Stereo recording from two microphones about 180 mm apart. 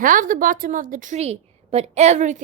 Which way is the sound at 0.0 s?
50° right (ahead or behind).